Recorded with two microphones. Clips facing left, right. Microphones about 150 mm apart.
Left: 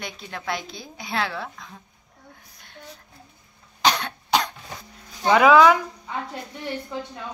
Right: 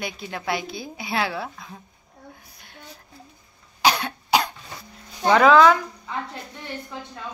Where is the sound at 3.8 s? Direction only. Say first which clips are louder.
Right 1 dB; 5° right (ahead or behind).